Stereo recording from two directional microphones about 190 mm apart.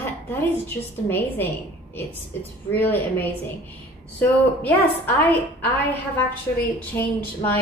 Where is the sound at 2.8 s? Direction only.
10° left (ahead or behind).